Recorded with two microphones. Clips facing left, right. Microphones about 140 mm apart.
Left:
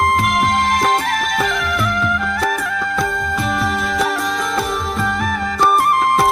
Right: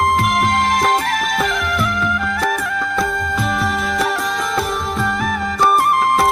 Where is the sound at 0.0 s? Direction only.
Centre (ahead or behind).